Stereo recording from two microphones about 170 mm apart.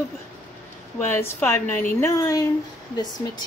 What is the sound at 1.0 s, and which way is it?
Speech, 15° left (ahead or behind).